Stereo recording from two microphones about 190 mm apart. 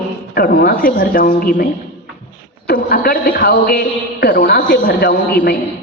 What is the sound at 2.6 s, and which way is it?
A man's voice, 50° left (ahead or behind).